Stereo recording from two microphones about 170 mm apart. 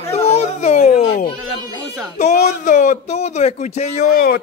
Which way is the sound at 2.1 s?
45° left (ahead or behind).